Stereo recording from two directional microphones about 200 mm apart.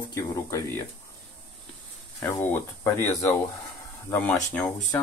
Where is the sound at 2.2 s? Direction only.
10° left (ahead or behind).